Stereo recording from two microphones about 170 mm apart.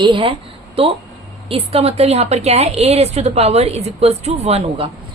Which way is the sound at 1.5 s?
35° right (ahead or behind).